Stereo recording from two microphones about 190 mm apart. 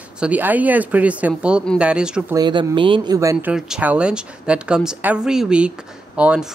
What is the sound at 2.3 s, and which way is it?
Speech, 25° right (ahead or behind).